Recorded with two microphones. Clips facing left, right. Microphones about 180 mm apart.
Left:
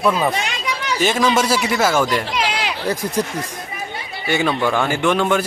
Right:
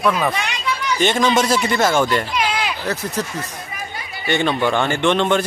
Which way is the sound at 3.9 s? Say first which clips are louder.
Left 2 dB; 25° left (ahead or behind).